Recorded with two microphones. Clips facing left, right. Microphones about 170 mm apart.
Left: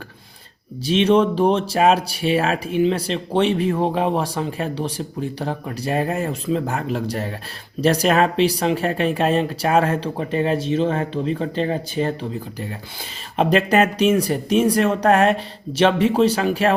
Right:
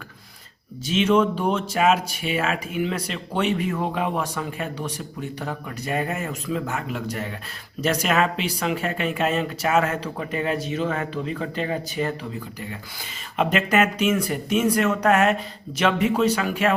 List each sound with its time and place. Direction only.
0.9 s speech: 35° left (ahead or behind)